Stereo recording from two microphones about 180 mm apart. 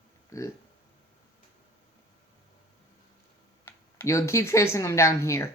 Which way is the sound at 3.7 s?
15° left (ahead or behind).